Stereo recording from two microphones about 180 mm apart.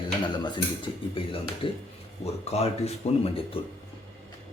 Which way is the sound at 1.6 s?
30° left (ahead or behind).